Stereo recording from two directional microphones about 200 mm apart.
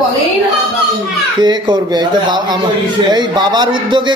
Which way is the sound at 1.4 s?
20° right (ahead or behind).